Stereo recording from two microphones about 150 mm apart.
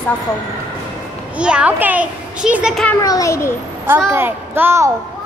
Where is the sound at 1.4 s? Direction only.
5° right (ahead or behind).